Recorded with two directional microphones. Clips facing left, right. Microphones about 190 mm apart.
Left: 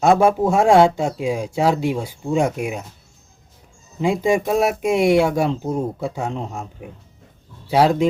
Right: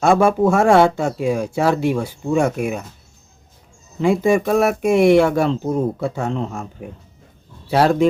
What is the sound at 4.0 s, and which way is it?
Speech, 15° left (ahead or behind).